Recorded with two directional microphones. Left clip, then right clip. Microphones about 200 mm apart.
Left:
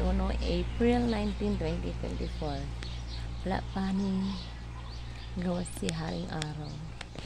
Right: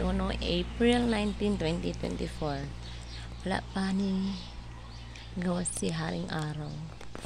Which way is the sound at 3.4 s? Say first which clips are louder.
Right 1 dB; 10° right (ahead or behind).